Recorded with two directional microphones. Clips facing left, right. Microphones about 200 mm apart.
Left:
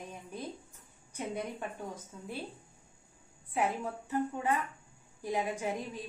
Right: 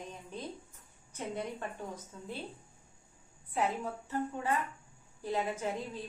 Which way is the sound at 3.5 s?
10° left (ahead or behind).